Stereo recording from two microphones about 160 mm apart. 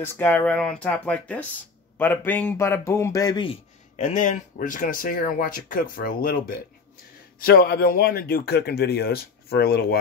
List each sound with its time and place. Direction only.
0.0 s a man's voice: 15° left (ahead or behind)
3.9 s speech: 50° left (ahead or behind); by 6.6 s 65° left (ahead or behind)
7.4 s a man's voice: 80° left